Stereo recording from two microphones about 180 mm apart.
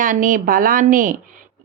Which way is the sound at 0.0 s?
50° right (ahead or behind).